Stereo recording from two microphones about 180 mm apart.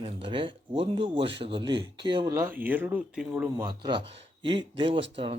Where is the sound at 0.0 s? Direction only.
30° right (ahead or behind).